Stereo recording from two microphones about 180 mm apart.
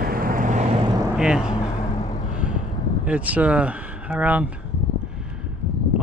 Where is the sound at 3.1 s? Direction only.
10° right (ahead or behind).